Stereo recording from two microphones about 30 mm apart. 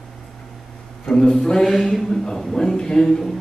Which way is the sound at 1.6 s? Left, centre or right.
Centre.